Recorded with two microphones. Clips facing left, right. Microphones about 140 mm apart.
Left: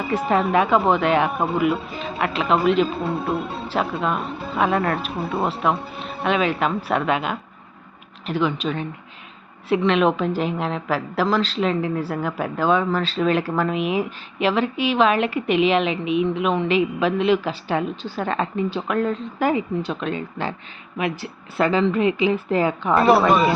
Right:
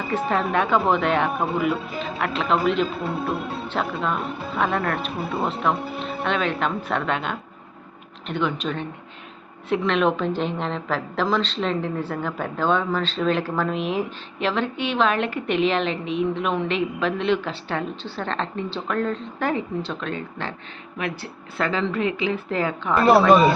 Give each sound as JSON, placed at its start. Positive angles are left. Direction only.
{"t": 0.1, "sound": "a woman's voice", "side_deg": 5}
{"t": 6.2, "sound": "a woman's voice", "side_deg": 5}